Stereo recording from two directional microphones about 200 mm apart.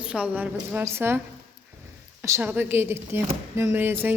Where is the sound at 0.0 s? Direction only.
5° right (ahead or behind).